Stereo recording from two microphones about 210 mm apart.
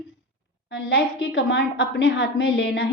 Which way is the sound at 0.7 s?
55° left (ahead or behind).